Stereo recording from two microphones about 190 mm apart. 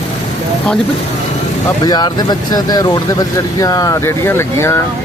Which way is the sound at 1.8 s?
20° left (ahead or behind).